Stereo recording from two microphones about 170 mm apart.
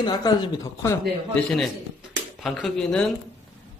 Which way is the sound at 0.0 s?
25° left (ahead or behind).